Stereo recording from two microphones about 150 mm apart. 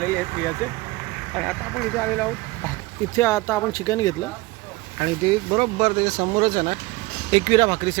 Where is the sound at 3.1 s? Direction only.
20° left (ahead or behind).